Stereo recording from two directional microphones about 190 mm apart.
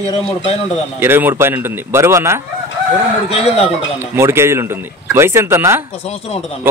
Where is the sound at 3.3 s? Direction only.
35° left (ahead or behind).